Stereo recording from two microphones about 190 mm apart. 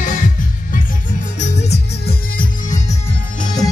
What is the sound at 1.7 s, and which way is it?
Music, 55° left (ahead or behind).